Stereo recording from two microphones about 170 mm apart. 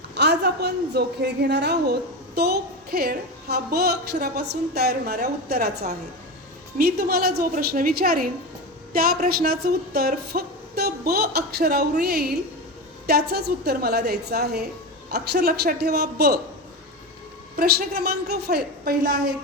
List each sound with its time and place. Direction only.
0.1 s a woman's voice: 80° right
6.7 s a woman's voice: 65° right (ahead or behind)
17.6 s a woman's voice: 65° right (ahead or behind)